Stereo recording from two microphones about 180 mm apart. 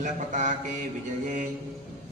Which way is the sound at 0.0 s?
45° right (ahead or behind).